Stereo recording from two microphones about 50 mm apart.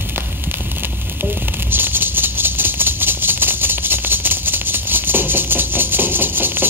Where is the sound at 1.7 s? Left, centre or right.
Right.